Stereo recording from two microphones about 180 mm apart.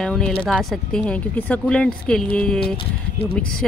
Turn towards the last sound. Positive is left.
turn(degrees=30)  # may be behind; listen again after turning